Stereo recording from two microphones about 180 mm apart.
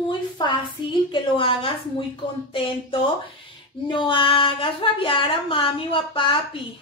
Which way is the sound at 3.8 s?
30° left (ahead or behind).